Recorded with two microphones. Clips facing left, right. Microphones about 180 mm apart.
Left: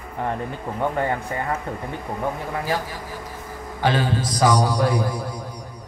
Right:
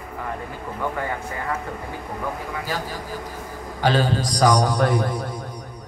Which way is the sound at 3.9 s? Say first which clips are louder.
Right 2 dB; 40° right (ahead or behind).